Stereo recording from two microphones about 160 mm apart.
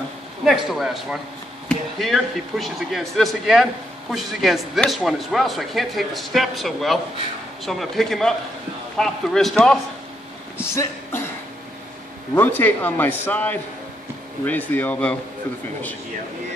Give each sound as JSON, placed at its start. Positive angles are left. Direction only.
{"t": 0.5, "sound": "speech", "side_deg": 0}
{"t": 10.6, "sound": "speech", "side_deg": 15}
{"t": 12.4, "sound": "speech", "side_deg": 10}